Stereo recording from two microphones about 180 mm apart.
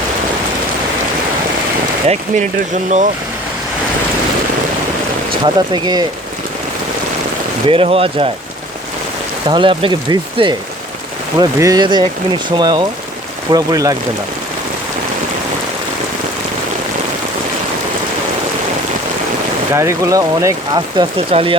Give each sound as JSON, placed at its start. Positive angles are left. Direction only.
{"t": 2.0, "sound": "speech", "side_deg": -40}
{"t": 5.4, "sound": "speech", "side_deg": -25}
{"t": 7.7, "sound": "speech", "side_deg": -30}
{"t": 9.5, "sound": "speech", "side_deg": -30}
{"t": 19.7, "sound": "speech", "side_deg": -15}